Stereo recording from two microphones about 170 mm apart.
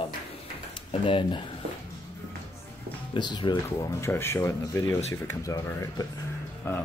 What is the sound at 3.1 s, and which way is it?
Speech, 25° left (ahead or behind).